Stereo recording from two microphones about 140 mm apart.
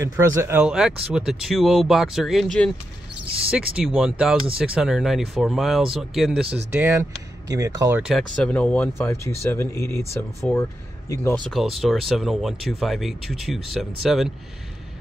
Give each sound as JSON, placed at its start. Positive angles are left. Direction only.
{"t": 0.2, "sound": "speech", "side_deg": -15}
{"t": 6.8, "sound": "speech", "side_deg": -20}
{"t": 8.0, "sound": "speech", "side_deg": 0}
{"t": 8.5, "sound": "speech", "side_deg": 10}
{"t": 11.4, "sound": "speech", "side_deg": 0}